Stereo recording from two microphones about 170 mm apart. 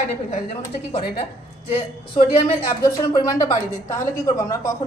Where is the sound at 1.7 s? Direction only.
30° left (ahead or behind).